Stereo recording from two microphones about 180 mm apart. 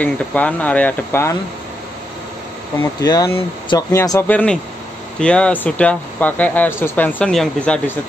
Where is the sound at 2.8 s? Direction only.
20° left (ahead or behind).